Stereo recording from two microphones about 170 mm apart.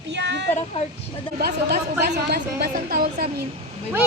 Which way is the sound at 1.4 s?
70° right (ahead or behind).